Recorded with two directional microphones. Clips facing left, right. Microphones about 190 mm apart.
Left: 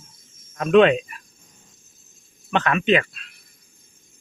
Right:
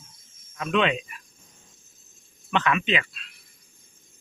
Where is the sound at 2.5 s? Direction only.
45° left (ahead or behind).